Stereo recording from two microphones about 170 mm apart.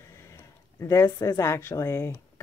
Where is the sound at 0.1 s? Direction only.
15° left (ahead or behind).